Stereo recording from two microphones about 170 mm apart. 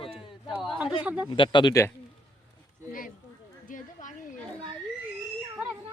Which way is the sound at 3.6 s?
50° left (ahead or behind).